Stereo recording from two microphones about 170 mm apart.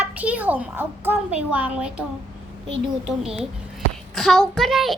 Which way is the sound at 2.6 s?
30° right (ahead or behind).